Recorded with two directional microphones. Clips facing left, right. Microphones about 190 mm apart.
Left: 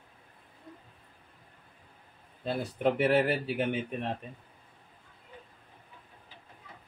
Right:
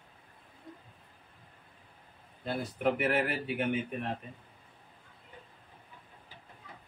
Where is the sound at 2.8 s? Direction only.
30° left (ahead or behind).